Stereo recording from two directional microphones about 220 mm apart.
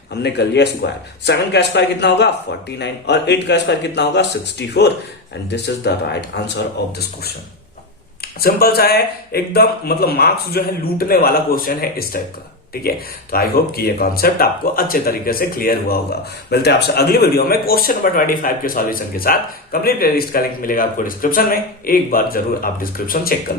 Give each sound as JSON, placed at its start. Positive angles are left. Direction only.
{"t": 0.1, "sound": "speech", "side_deg": 50}
{"t": 8.2, "sound": "speech", "side_deg": 45}
{"t": 13.3, "sound": "a man's voice", "side_deg": 45}